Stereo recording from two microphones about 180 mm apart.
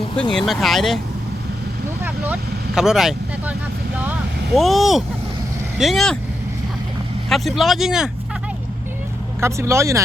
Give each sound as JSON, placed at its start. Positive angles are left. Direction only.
{"t": 0.2, "sound": "speech", "side_deg": 5}
{"t": 2.0, "sound": "speech", "side_deg": -10}
{"t": 4.5, "sound": "speech", "side_deg": 0}
{"t": 7.3, "sound": "speech", "side_deg": 0}
{"t": 9.4, "sound": "speech", "side_deg": -15}